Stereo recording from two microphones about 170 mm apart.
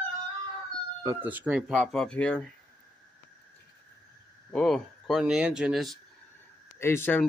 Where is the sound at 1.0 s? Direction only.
15° right (ahead or behind); by 2.4 s 5° left (ahead or behind).